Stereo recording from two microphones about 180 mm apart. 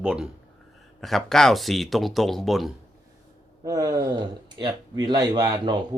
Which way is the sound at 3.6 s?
20° right (ahead or behind).